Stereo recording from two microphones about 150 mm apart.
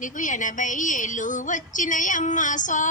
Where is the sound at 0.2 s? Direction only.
60° left (ahead or behind).